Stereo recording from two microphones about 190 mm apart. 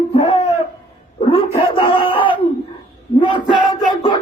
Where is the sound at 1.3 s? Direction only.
30° left (ahead or behind).